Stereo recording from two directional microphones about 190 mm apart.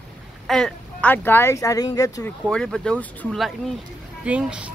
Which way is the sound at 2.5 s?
Centre (ahead or behind).